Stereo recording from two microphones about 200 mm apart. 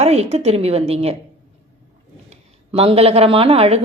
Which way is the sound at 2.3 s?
30° right (ahead or behind).